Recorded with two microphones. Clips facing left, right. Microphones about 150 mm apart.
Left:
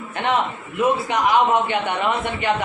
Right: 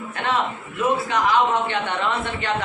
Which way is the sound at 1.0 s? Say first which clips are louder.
Left 2 dB; 15° left (ahead or behind).